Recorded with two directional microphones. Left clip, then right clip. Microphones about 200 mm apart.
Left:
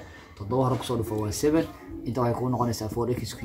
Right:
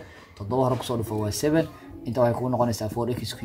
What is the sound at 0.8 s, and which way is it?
Speech, 45° right (ahead or behind).